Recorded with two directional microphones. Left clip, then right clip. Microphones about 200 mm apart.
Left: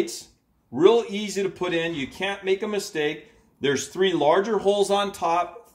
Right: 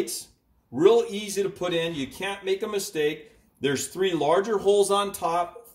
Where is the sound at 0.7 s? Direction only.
15° left (ahead or behind).